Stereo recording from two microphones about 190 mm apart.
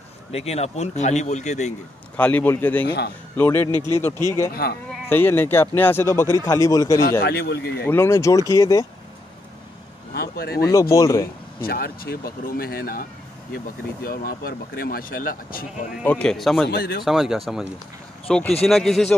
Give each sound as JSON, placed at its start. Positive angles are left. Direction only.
{"t": 0.3, "sound": "speech", "side_deg": 35}
{"t": 2.1, "sound": "speech", "side_deg": 10}
{"t": 3.7, "sound": "speech", "side_deg": -20}
{"t": 4.6, "sound": "speech", "side_deg": 55}
{"t": 5.1, "sound": "speech", "side_deg": 10}
{"t": 7.1, "sound": "speech", "side_deg": 55}
{"t": 7.8, "sound": "speech", "side_deg": 10}
{"t": 10.1, "sound": "a sound", "side_deg": 55}
{"t": 10.6, "sound": "speech", "side_deg": 15}
{"t": 11.6, "sound": "speech", "side_deg": 50}
{"t": 14.0, "sound": "speech", "side_deg": 50}
{"t": 15.9, "sound": "speech", "side_deg": 5}
{"t": 16.6, "sound": "speech", "side_deg": 55}
{"t": 17.0, "sound": "speech", "side_deg": 0}